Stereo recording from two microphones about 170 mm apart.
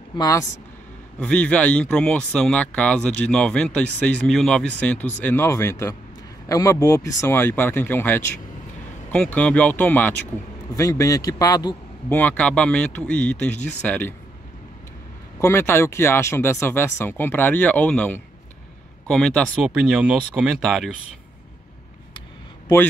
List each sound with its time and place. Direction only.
0.2 s a man's voice: 20° left (ahead or behind)
1.2 s a man's voice: 10° left (ahead or behind)
12.2 s speech: 10° left (ahead or behind)
15.3 s speech: 15° left (ahead or behind)
19.5 s speech: 5° right (ahead or behind)